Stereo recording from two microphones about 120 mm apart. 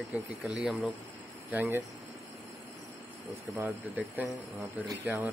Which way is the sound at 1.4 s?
20° right (ahead or behind).